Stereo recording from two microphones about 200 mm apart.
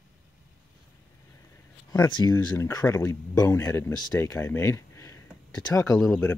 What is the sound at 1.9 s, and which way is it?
Speech, 20° left (ahead or behind).